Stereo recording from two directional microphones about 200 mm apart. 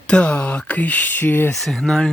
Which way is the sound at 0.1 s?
5° left (ahead or behind).